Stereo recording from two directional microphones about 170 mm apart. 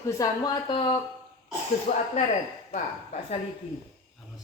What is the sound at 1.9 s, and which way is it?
Speech, 40° left (ahead or behind).